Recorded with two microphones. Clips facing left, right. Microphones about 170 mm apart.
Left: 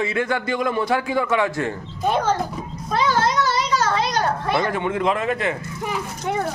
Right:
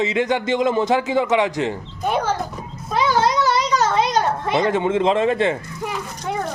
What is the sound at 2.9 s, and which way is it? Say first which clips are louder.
Children playing: right 2 dB; 15° right (ahead or behind).